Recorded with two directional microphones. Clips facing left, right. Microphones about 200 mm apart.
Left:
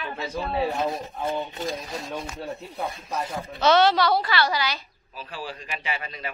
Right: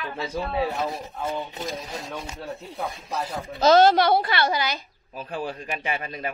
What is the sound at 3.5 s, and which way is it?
Speech, 40° right (ahead or behind).